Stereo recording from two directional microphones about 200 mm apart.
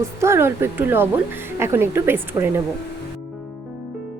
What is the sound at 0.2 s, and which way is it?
A woman's voice, 15° right (ahead or behind).